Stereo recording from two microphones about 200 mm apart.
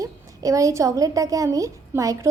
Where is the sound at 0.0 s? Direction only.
15° right (ahead or behind).